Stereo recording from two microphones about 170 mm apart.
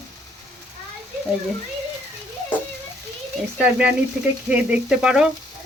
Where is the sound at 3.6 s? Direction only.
5° right (ahead or behind).